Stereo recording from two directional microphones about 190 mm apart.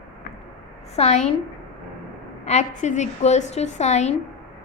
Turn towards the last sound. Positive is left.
turn(degrees=35)  # may be behind; listen again after turning